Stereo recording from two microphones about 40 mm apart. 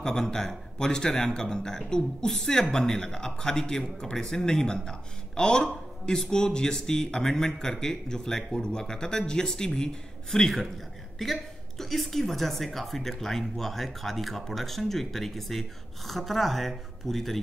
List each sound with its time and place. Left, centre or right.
0.0 s a man's voice: centre
11.2 s speech: centre